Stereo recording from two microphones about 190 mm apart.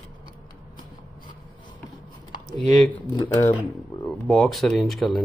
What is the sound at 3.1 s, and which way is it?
Speech, 20° left (ahead or behind).